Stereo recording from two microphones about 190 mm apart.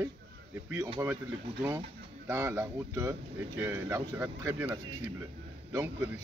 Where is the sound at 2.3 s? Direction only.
15° right (ahead or behind).